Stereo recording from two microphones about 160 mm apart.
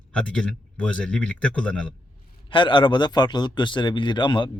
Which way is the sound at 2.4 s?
30° left (ahead or behind).